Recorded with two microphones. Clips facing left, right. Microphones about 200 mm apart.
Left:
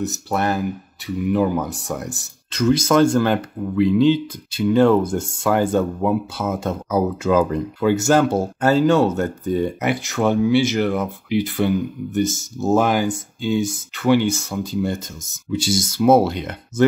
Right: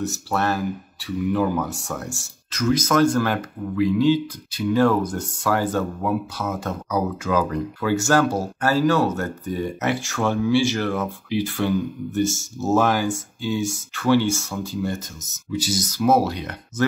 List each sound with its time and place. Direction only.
0.0 s speech: 20° left (ahead or behind)
2.5 s speech: 30° left (ahead or behind)